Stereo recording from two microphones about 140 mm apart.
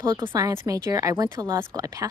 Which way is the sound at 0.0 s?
30° right (ahead or behind).